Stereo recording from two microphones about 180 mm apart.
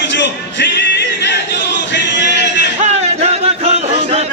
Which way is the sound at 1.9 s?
75° left (ahead or behind).